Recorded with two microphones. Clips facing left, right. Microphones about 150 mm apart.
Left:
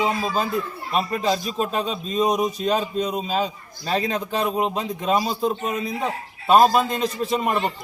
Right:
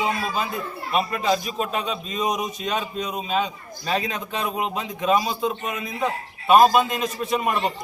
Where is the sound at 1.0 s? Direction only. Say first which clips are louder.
Even; 35° left (ahead or behind).